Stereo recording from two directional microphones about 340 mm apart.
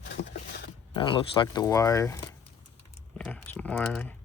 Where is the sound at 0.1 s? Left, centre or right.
Left.